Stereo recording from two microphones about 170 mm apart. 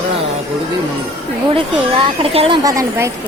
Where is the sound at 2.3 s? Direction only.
35° right (ahead or behind).